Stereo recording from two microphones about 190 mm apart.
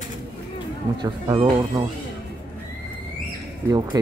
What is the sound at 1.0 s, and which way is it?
Speech, 25° right (ahead or behind).